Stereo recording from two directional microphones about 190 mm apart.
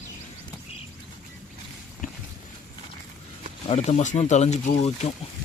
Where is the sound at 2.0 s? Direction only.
45° left (ahead or behind).